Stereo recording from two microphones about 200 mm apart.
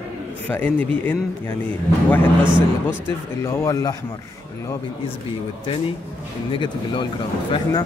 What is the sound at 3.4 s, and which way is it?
Speech, 15° left (ahead or behind).